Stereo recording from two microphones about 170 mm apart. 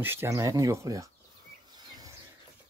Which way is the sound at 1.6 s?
25° right (ahead or behind).